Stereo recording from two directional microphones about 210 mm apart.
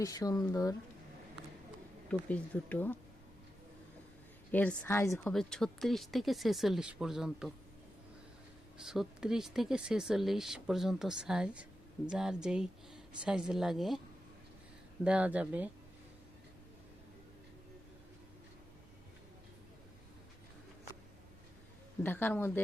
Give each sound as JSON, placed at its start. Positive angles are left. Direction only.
{"t": 0.0, "sound": "speech", "side_deg": 15}
{"t": 2.0, "sound": "speech", "side_deg": 5}
{"t": 4.5, "sound": "speech", "side_deg": 5}
{"t": 5.3, "sound": "speech", "side_deg": 0}
{"t": 8.8, "sound": "speech", "side_deg": 0}
{"t": 15.0, "sound": "speech", "side_deg": -5}
{"t": 22.0, "sound": "speech", "side_deg": 10}